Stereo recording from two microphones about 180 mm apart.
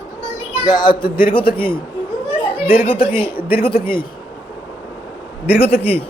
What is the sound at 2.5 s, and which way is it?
Speech, 10° right (ahead or behind).